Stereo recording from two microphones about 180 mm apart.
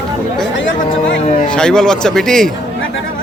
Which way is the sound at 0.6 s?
90° left.